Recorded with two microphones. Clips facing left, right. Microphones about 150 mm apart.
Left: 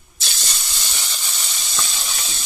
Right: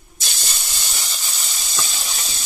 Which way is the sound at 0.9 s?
Centre (ahead or behind).